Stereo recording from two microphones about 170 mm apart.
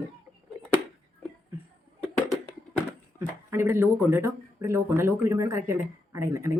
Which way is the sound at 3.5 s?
15° right (ahead or behind).